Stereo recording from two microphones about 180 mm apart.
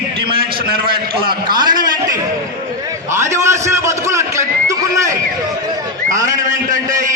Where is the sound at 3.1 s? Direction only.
15° right (ahead or behind).